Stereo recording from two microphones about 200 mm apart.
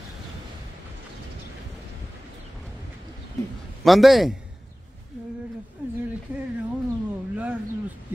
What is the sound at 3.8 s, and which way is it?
Speech, centre (ahead or behind).